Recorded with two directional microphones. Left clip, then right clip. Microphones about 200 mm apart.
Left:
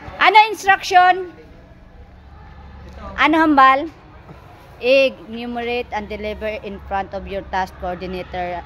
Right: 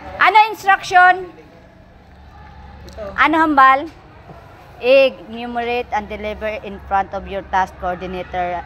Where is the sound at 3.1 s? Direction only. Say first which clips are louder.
Right 1 dB; 25° left (ahead or behind).